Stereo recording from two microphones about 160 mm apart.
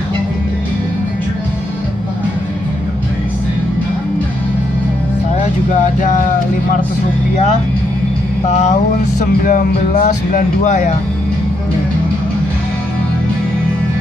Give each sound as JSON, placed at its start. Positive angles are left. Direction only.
{"t": 8.5, "sound": "vehicle", "side_deg": 45}
{"t": 9.2, "sound": "speech", "side_deg": 60}